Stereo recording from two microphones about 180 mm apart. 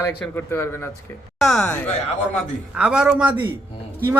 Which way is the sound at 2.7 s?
5° right (ahead or behind).